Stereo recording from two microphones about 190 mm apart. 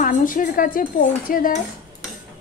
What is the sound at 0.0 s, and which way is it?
Dishes, 45° left (ahead or behind).